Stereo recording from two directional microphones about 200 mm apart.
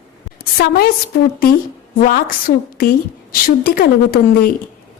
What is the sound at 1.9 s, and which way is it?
Speech, 45° left (ahead or behind).